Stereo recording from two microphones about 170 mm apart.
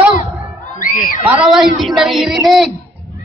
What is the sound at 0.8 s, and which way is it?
Crowd, 55° left (ahead or behind).